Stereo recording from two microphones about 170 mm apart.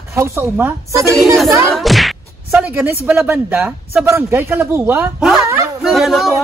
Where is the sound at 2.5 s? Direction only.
10° right (ahead or behind).